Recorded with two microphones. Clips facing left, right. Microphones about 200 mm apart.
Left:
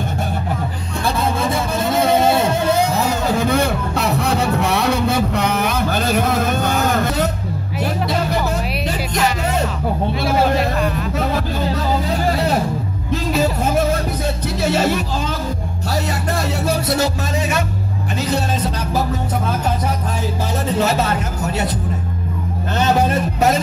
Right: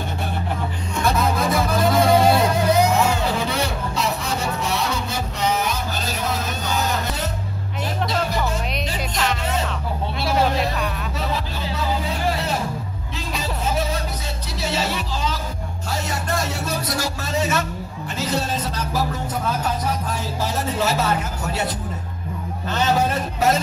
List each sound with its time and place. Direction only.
1.0 s vehicle: 30° left (ahead or behind)
2.0 s music: 25° left (ahead or behind)
3.1 s music: 45° left (ahead or behind)
10.2 s a sound: 55° left (ahead or behind)
14.6 s music: 55° left (ahead or behind)